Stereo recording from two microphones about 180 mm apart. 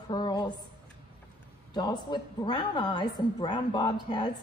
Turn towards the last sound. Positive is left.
turn(degrees=25)  # may be behind; listen again after turning